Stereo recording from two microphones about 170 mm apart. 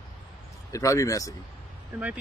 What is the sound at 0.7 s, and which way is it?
Speech, 20° left (ahead or behind).